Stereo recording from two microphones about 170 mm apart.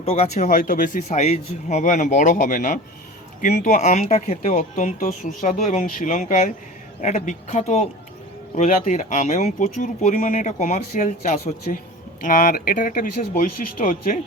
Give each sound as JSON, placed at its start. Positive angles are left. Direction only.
{"t": 0.0, "sound": "speech", "side_deg": 35}